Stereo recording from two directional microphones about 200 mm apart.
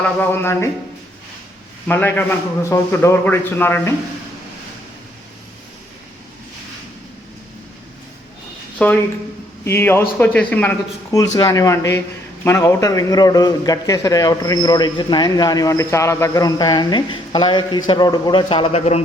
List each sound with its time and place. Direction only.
0.2 s speech: 10° left (ahead or behind)
1.9 s speech: 10° left (ahead or behind)
8.8 s a man's voice: 5° left (ahead or behind); by 19.0 s 30° left (ahead or behind)